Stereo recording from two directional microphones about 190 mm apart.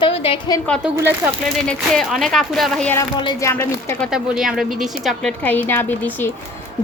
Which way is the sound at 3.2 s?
25° left (ahead or behind).